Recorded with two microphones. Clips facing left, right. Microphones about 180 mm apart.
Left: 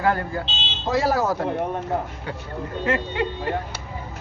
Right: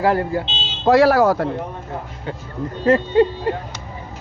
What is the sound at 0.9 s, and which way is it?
Speech, 70° right (ahead or behind).